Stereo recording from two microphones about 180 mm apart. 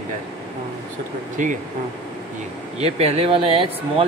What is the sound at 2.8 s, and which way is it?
A man's voice, 35° right (ahead or behind).